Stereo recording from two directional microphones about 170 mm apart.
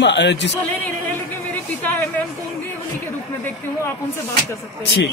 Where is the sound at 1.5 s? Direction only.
10° left (ahead or behind).